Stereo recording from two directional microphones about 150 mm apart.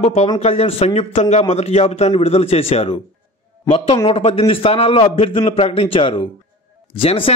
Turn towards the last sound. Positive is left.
turn(degrees=40)  # may be behind; listen again after turning